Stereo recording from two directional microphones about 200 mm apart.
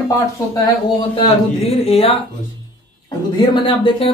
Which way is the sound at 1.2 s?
30° left (ahead or behind).